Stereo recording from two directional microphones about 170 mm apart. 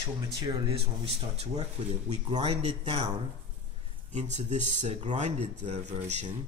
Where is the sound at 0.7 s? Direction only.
35° right (ahead or behind).